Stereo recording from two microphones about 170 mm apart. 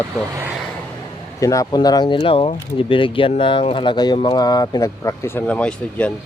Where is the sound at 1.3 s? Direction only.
20° left (ahead or behind).